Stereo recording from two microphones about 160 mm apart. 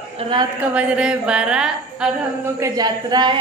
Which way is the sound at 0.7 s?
5° right (ahead or behind).